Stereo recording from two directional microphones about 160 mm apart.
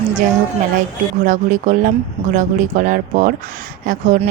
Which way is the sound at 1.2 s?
55° right (ahead or behind).